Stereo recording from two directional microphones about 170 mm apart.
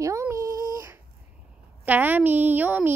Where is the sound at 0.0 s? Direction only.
15° right (ahead or behind).